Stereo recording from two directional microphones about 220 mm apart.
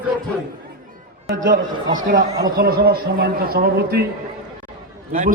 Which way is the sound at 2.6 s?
45° right (ahead or behind).